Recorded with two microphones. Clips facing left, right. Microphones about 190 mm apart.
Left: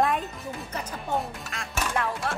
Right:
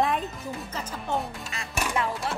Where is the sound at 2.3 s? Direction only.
55° left (ahead or behind).